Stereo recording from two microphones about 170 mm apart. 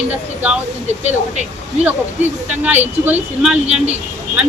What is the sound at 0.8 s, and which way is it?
Speech, 40° right (ahead or behind).